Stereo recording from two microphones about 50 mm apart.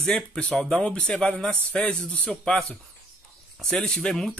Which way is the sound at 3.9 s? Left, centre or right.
Centre.